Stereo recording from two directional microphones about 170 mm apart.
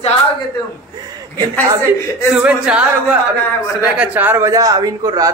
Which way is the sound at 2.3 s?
5° right (ahead or behind).